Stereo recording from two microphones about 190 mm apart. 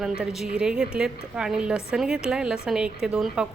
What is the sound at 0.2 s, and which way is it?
A woman's voice, 5° right (ahead or behind).